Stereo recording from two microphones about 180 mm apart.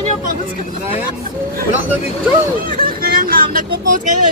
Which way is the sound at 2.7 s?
50° right (ahead or behind).